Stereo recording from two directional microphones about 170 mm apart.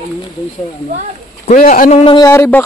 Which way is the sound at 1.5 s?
50° left (ahead or behind).